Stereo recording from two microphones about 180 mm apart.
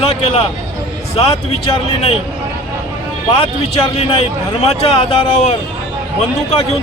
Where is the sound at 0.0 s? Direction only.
35° left (ahead or behind).